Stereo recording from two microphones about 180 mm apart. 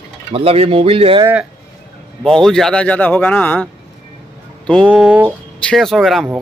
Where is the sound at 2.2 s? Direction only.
5° left (ahead or behind).